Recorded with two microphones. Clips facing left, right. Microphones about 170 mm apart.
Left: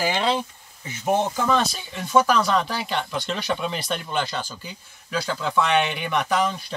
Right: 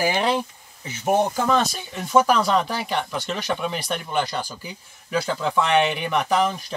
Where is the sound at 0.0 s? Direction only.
10° right (ahead or behind).